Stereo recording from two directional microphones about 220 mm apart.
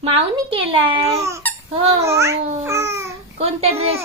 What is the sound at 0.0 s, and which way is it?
A woman's voice, 25° right (ahead or behind).